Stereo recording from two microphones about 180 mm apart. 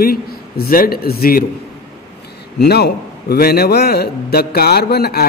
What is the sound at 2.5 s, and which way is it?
Speech, 60° left (ahead or behind).